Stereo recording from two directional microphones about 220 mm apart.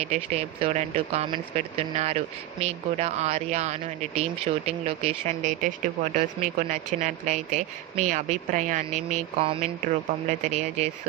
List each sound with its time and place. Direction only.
0.0 s speech: 30° right (ahead or behind)